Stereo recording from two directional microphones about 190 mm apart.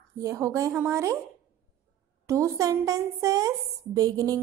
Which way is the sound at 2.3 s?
15° right (ahead or behind).